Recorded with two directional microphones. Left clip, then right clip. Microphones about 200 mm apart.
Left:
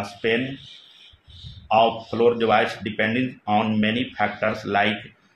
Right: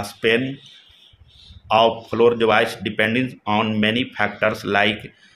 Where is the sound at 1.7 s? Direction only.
35° right (ahead or behind).